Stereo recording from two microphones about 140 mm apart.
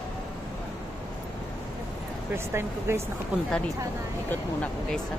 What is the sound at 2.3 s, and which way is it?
Speech, 20° right (ahead or behind).